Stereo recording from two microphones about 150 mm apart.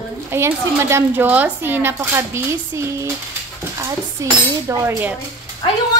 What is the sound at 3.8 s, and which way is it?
Speech, 20° right (ahead or behind).